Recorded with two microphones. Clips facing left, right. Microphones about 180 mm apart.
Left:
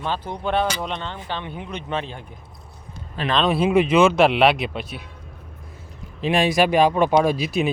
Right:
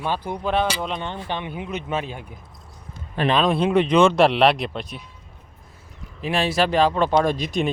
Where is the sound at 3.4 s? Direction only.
5° left (ahead or behind).